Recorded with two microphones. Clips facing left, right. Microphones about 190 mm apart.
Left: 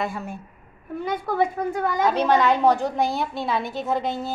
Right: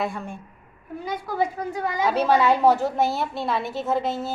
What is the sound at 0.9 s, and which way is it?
A woman's voice, 55° left (ahead or behind).